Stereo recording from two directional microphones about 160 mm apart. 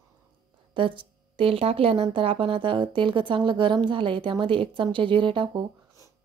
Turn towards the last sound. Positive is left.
turn(degrees=-30)  # may be behind; listen again after turning